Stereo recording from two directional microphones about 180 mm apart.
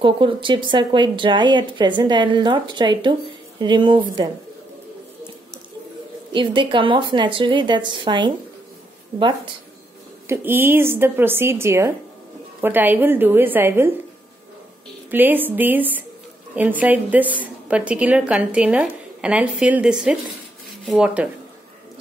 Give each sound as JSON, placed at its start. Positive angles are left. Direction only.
{"t": 0.0, "sound": "speech", "side_deg": -30}
{"t": 6.3, "sound": "speech", "side_deg": -25}
{"t": 10.2, "sound": "a woman's voice", "side_deg": -15}
{"t": 15.0, "sound": "a woman's voice", "side_deg": -10}